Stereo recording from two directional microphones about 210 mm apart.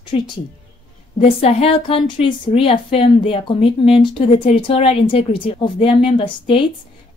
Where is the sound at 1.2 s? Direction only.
25° left (ahead or behind).